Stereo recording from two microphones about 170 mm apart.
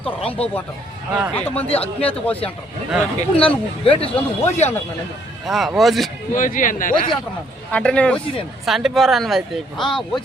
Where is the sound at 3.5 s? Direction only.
35° left (ahead or behind).